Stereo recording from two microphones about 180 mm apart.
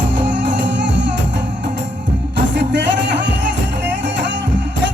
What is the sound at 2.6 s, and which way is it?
Music, 75° right (ahead or behind).